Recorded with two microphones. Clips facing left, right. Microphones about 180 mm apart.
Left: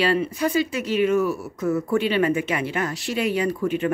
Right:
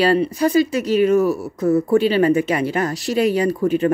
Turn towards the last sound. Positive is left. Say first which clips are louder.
# right 5 dB
turn(degrees=-35)  # may be behind; listen again after turning